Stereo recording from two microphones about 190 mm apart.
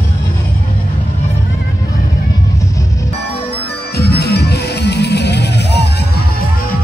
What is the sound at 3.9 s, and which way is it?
Music, 55° left (ahead or behind).